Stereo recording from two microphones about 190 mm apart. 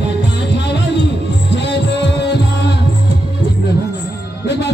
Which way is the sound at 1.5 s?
65° left (ahead or behind).